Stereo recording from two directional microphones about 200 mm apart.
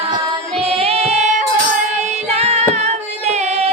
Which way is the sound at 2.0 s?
35° right (ahead or behind).